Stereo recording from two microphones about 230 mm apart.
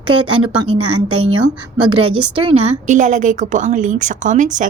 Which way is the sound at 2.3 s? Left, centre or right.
Right.